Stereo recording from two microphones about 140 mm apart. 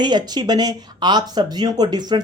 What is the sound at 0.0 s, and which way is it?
Speech, 30° right (ahead or behind).